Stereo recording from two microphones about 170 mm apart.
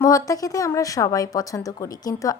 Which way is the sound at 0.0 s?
20° left (ahead or behind).